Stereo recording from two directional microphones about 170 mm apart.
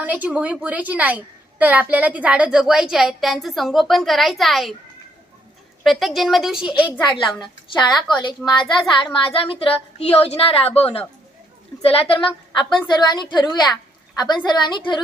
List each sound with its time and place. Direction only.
0.0 s a woman's voice: 10° right (ahead or behind)
5.8 s a woman's voice: centre (ahead or behind)
7.2 s a woman's voice: 30° left (ahead or behind)
11.8 s a woman's voice: 35° left (ahead or behind)